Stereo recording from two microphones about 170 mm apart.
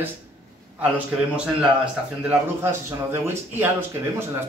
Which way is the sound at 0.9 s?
5° right (ahead or behind).